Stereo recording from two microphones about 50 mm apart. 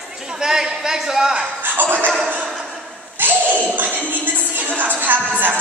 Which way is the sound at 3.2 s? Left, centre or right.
Right.